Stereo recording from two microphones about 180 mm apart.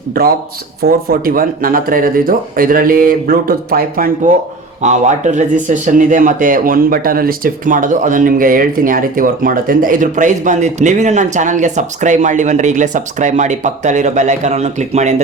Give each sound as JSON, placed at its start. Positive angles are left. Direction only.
{"t": 0.1, "sound": "speech", "side_deg": -55}
{"t": 4.8, "sound": "speech", "side_deg": -40}